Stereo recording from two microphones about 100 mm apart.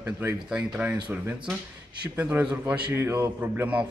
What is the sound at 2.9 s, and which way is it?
Speech, 25° right (ahead or behind).